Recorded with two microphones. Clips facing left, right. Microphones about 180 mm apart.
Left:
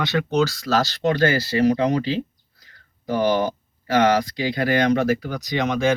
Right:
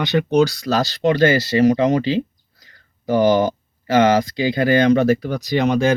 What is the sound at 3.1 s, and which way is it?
Speech, 25° right (ahead or behind).